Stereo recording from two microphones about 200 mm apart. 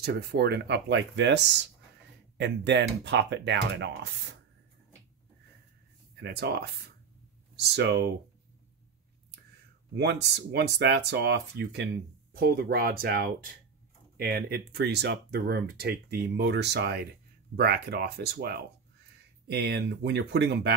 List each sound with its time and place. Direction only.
0.0 s speech: 55° right (ahead or behind)
6.2 s speech: 55° right (ahead or behind)
9.9 s speech: 55° right (ahead or behind)